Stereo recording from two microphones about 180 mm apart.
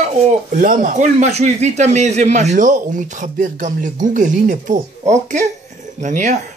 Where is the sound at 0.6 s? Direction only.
45° right (ahead or behind).